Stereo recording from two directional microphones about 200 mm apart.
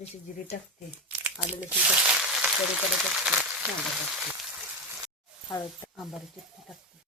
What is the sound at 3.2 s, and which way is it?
Speech, centre (ahead or behind).